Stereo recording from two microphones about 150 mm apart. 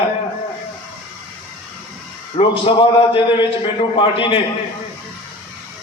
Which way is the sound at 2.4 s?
35° left (ahead or behind).